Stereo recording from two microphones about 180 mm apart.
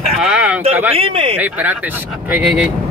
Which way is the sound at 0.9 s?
35° right (ahead or behind).